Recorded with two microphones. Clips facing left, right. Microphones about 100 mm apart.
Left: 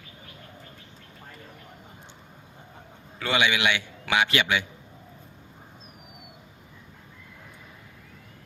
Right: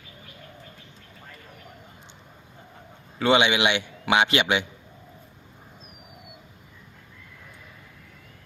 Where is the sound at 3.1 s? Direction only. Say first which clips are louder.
Right 5 dB; 20° right (ahead or behind).